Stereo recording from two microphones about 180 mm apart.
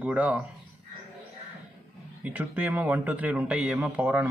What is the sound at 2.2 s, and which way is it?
A man's voice, 10° right (ahead or behind).